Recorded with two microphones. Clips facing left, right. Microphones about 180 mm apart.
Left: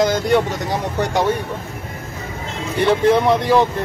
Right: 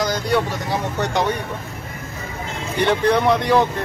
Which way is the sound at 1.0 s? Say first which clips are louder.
Left 3 dB; 10° left (ahead or behind).